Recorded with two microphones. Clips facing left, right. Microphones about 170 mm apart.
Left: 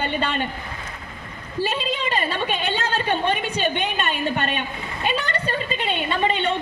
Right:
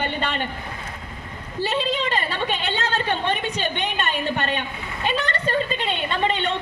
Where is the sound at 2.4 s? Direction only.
20° right (ahead or behind).